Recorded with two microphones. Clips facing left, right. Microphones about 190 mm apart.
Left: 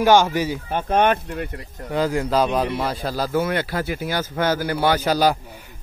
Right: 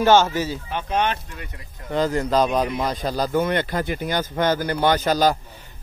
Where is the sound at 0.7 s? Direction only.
50° left (ahead or behind).